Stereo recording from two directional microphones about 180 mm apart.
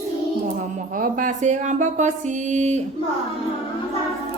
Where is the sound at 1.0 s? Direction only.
45° right (ahead or behind).